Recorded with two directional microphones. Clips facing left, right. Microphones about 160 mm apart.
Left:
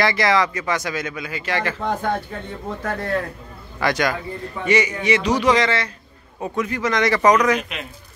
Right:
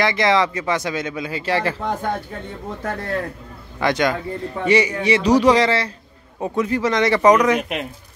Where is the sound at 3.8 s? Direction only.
25° right (ahead or behind).